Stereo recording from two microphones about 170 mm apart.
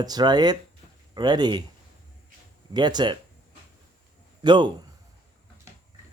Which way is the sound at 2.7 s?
25° right (ahead or behind).